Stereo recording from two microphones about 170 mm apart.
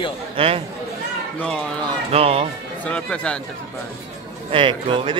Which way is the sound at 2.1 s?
35° right (ahead or behind).